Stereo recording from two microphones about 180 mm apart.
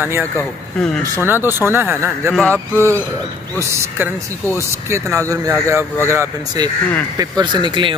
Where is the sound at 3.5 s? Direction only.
10° right (ahead or behind).